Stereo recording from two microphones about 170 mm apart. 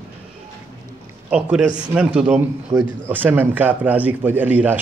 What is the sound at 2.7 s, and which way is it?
A man's voice, 20° right (ahead or behind).